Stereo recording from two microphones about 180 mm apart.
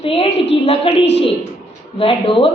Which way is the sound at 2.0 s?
30° left (ahead or behind).